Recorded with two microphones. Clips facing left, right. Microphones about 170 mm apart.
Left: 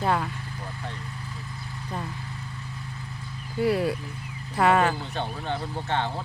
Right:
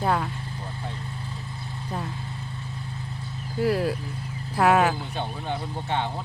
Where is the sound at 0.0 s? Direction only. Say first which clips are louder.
Right 1 dB; centre (ahead or behind).